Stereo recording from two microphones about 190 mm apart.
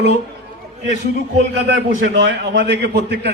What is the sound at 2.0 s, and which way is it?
A man's voice, 75° right (ahead or behind).